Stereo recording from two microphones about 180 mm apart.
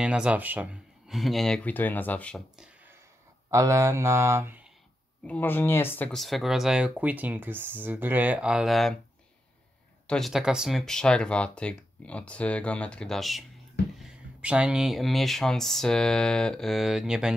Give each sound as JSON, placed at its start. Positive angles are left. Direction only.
{"t": 0.0, "sound": "speech", "side_deg": -5}
{"t": 3.4, "sound": "speech", "side_deg": -15}
{"t": 5.2, "sound": "speech", "side_deg": 10}
{"t": 10.0, "sound": "speech", "side_deg": 0}